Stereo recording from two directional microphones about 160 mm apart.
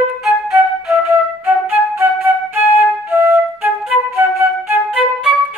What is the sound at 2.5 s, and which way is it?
Flute, 10° right (ahead or behind).